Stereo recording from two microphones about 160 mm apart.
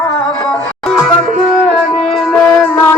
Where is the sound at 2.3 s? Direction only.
15° left (ahead or behind).